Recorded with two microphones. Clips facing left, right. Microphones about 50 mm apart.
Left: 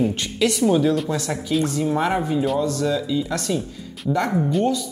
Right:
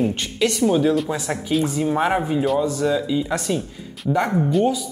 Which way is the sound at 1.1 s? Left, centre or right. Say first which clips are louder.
Even; centre.